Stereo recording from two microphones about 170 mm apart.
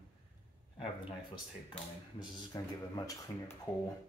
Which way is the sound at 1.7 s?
25° left (ahead or behind).